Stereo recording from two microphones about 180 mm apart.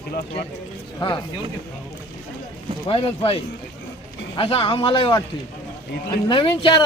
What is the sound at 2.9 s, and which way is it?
Speech, 30° left (ahead or behind).